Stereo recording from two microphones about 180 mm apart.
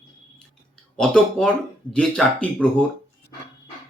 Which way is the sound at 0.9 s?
5° left (ahead or behind).